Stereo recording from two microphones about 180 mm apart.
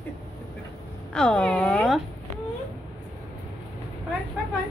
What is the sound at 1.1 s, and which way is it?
Speech, 5° left (ahead or behind).